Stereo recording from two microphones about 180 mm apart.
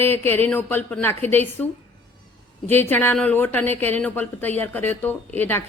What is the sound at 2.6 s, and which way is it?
A woman's voice, 10° left (ahead or behind).